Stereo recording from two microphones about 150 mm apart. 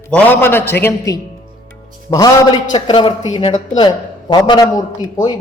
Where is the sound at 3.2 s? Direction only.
50° left (ahead or behind).